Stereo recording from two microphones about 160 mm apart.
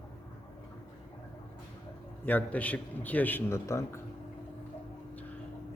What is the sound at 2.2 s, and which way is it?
A man's voice, 10° left (ahead or behind).